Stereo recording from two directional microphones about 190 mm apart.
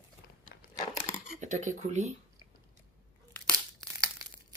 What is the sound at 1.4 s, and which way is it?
Speech, 40° right (ahead or behind).